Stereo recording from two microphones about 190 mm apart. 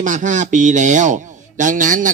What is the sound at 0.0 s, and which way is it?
Speech, 40° right (ahead or behind).